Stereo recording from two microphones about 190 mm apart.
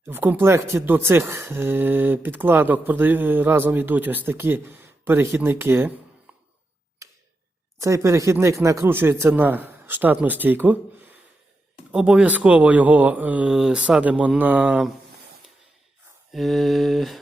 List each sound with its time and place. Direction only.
0.0 s speech: 10° right (ahead or behind)
6.3 s a sound: 10° right (ahead or behind)
7.0 s tick-tock: 15° right (ahead or behind)
7.8 s speech: 15° right (ahead or behind)
11.9 s speech: 5° right (ahead or behind)
16.3 s mantra: centre (ahead or behind)